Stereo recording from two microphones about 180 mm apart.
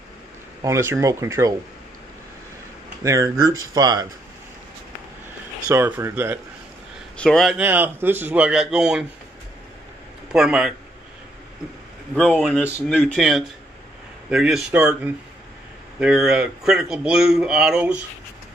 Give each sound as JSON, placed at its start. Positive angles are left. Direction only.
{"t": 0.6, "sound": "a man's voice", "side_deg": -15}
{"t": 3.0, "sound": "speech", "side_deg": -15}
{"t": 5.7, "sound": "a man's voice", "side_deg": -10}
{"t": 7.2, "sound": "speech", "side_deg": 5}
{"t": 7.5, "sound": "a man's voice", "side_deg": -10}
{"t": 10.3, "sound": "speech", "side_deg": -5}
{"t": 12.2, "sound": "speech", "side_deg": 5}
{"t": 16.0, "sound": "speech", "side_deg": -5}